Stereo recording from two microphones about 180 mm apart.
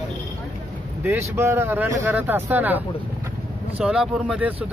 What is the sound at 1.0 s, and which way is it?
Speech, 15° right (ahead or behind).